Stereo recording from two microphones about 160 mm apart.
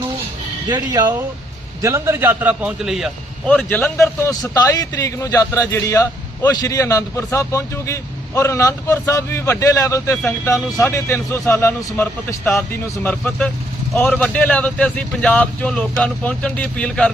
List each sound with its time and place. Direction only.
0.7 s a man's voice: 25° right (ahead or behind); by 3.1 s 5° right (ahead or behind)
3.4 s a man's voice: 10° left (ahead or behind)